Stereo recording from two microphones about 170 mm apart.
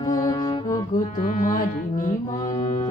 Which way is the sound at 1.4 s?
50° left (ahead or behind).